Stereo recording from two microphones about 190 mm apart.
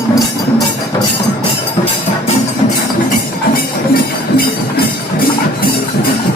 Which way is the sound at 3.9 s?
55° left (ahead or behind).